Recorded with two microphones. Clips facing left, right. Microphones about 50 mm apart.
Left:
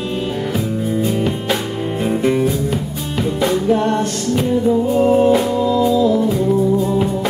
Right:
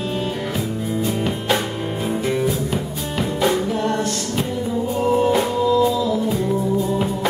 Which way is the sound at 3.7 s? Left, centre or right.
Left.